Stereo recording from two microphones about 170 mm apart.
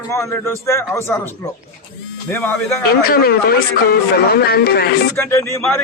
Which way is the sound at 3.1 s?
65° left (ahead or behind).